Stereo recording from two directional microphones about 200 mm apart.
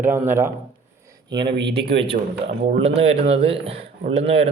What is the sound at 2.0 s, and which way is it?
A man's voice, 30° right (ahead or behind).